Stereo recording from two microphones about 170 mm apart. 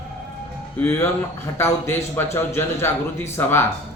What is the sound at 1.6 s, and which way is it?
A man's voice, 15° left (ahead or behind).